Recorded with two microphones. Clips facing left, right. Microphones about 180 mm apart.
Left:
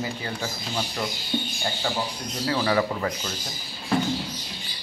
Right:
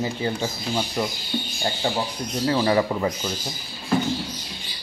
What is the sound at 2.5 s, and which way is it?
Speech, 25° right (ahead or behind).